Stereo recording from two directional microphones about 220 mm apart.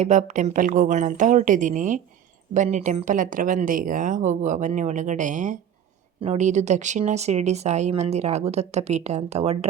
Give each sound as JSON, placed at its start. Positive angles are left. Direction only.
{"t": 0.0, "sound": "speech", "side_deg": -35}